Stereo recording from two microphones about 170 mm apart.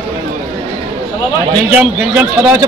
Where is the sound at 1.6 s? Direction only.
5° right (ahead or behind).